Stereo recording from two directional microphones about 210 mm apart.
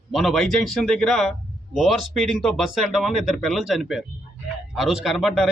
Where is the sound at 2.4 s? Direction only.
Centre (ahead or behind).